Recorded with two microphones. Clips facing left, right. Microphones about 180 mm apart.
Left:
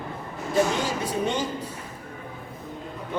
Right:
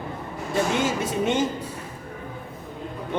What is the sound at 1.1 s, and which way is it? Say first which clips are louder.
Speech: right 3 dB; 20° right (ahead or behind).